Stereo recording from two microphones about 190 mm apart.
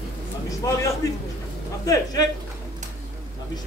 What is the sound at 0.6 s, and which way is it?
A man's voice, 20° left (ahead or behind).